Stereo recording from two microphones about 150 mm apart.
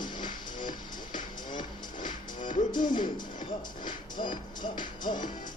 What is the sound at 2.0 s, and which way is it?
Music, 60° left (ahead or behind).